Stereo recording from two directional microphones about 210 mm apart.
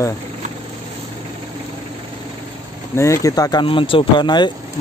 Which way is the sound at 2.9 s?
15° left (ahead or behind).